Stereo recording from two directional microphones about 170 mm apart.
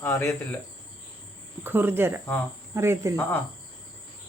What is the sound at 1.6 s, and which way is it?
Speech, 10° right (ahead or behind).